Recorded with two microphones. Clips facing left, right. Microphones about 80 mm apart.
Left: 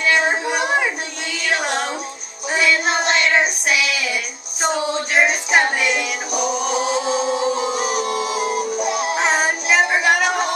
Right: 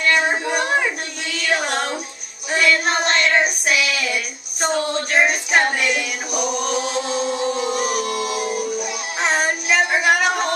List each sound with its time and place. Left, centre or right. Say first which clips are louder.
0.3 s a sound: left 1 dB; centre
0.7 s a sound: left 1 dB; centre
1.4 s music: even; centre
2.5 s child singing: even; centre
5.5 s music: left 1 dB; centre
7.5 s music: left 1 dB; left
9.2 s music: right 2 dB; centre